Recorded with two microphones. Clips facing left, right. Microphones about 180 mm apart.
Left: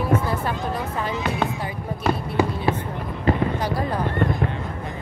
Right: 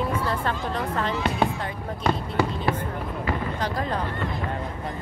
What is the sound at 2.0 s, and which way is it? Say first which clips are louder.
Basketball bounce: left 2 dB; 10° left (ahead or behind).